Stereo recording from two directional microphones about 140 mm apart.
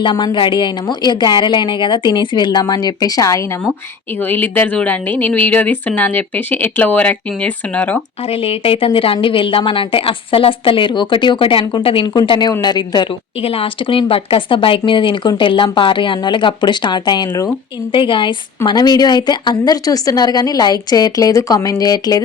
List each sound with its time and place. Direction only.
0.0 s speech: 35° left (ahead or behind)
4.2 s speech: 15° left (ahead or behind)
8.3 s a woman's voice: 45° left (ahead or behind); by 17.5 s 25° left (ahead or behind)
17.9 s a woman's voice: 40° left (ahead or behind)